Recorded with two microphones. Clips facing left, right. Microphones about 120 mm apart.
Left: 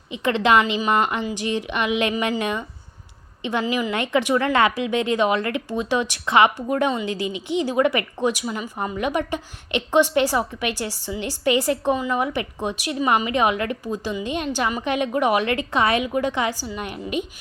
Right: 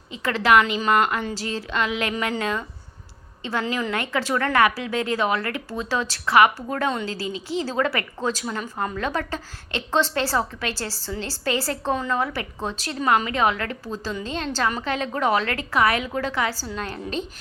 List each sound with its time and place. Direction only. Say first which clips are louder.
0.1 s a woman's voice: left 1 dB; 20° left (ahead or behind)